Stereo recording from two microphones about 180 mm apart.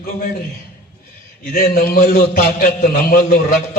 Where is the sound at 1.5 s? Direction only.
55° left (ahead or behind).